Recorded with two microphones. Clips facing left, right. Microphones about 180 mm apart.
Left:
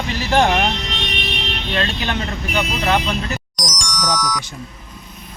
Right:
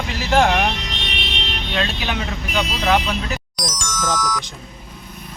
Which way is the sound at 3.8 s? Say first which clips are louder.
Even; 15° left (ahead or behind).